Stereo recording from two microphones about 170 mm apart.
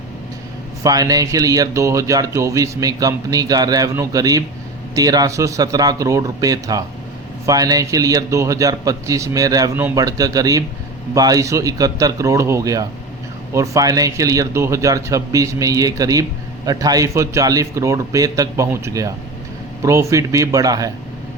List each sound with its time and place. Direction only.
0.8 s speech: 20° right (ahead or behind)